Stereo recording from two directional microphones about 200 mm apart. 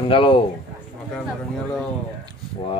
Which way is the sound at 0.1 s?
25° left (ahead or behind).